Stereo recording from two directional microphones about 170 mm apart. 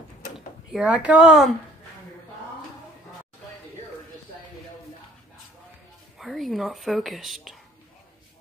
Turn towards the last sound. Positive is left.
turn(degrees=0)  # may be behind; listen again after turning